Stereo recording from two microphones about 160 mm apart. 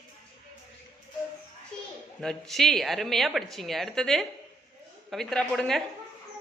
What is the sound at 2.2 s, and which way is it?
A woman's voice, 5° left (ahead or behind).